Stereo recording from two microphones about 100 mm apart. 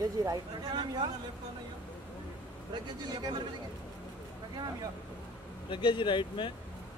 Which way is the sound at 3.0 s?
45° right (ahead or behind).